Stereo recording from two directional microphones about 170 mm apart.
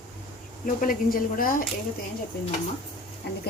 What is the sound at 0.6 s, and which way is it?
Speech, 55° left (ahead or behind).